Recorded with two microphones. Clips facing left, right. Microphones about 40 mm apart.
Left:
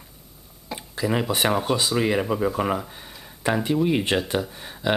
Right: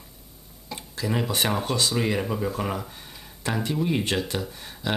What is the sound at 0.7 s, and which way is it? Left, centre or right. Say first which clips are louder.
Speech: left 4 dB; centre.